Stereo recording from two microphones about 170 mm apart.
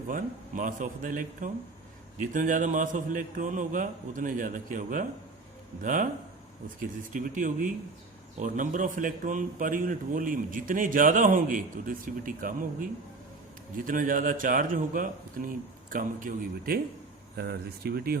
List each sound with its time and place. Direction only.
0.1 s a man's voice: 50° right (ahead or behind)
17.3 s speech: 70° right (ahead or behind)